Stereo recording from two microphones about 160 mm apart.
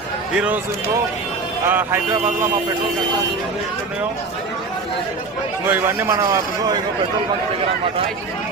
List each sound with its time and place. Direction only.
0.3 s a man's voice: 10° right (ahead or behind)
1.6 s a man's voice: 15° right (ahead or behind)
5.6 s a man's voice: 15° right (ahead or behind)